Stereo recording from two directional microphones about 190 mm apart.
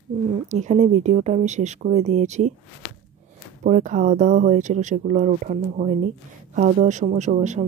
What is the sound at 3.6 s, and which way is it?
Speech, 40° right (ahead or behind).